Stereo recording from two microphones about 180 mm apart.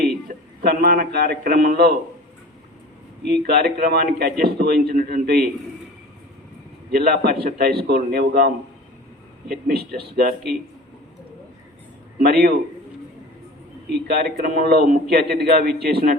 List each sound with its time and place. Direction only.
0.6 s a man's voice: 55° right (ahead or behind)
3.6 s a man's voice: 60° right (ahead or behind)
6.9 s a man's voice: 60° right (ahead or behind)
12.2 s a man's voice: 60° right (ahead or behind)
13.9 s a man's voice: 60° right (ahead or behind)